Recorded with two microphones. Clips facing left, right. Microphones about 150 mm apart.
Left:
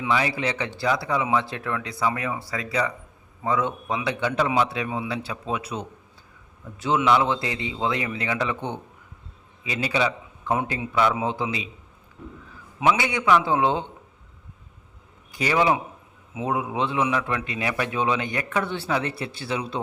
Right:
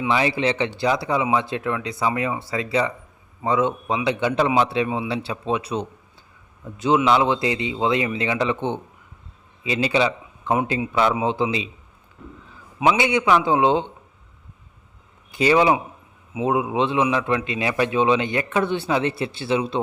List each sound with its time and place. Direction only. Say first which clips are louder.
0.1 s a man's voice: right 3 dB; 25° right (ahead or behind)
12.8 s a man's voice: right 3 dB; 20° right (ahead or behind)
15.3 s a man's voice: right 5 dB; 25° right (ahead or behind)